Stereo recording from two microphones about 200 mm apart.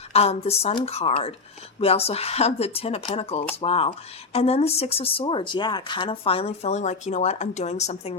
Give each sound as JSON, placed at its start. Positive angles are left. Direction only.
{"t": 0.1, "sound": "speech", "side_deg": 30}